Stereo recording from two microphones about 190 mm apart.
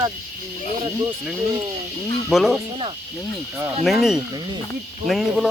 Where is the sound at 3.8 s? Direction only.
Centre (ahead or behind).